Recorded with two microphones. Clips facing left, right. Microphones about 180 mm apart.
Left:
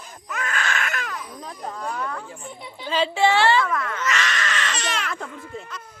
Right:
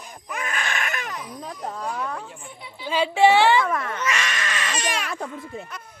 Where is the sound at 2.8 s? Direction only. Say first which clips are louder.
Right 3 dB; 10° right (ahead or behind).